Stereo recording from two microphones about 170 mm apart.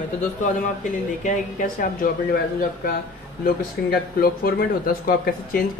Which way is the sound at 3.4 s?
60° left (ahead or behind).